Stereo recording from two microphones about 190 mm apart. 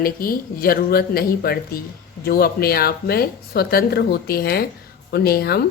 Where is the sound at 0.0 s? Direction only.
50° left (ahead or behind).